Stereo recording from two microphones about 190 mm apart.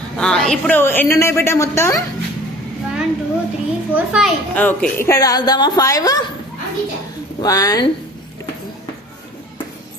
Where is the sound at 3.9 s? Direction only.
5° right (ahead or behind).